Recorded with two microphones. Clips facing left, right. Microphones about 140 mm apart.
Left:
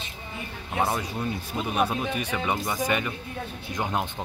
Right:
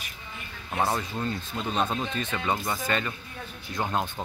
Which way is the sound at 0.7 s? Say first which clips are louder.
Left 1 dB; 15° left (ahead or behind).